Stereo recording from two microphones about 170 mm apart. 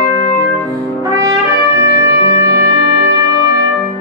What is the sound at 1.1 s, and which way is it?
Trumpet, 20° right (ahead or behind).